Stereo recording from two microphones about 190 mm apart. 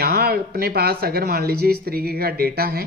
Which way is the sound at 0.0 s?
55° right (ahead or behind).